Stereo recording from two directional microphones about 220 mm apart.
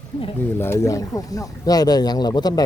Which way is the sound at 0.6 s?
10° left (ahead or behind).